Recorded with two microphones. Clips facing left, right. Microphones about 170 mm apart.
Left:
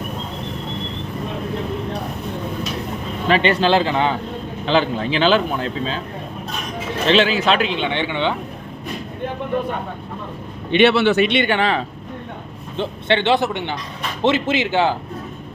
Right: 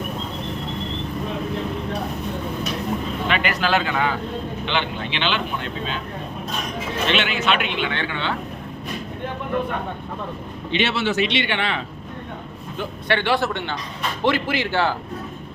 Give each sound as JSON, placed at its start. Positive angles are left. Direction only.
{"t": 3.2, "sound": "a man's voice", "side_deg": 30}
{"t": 7.1, "sound": "speech", "side_deg": 35}
{"t": 7.9, "sound": "a man's voice", "side_deg": 20}
{"t": 10.7, "sound": "a man's voice", "side_deg": 60}
{"t": 12.7, "sound": "a man's voice", "side_deg": 25}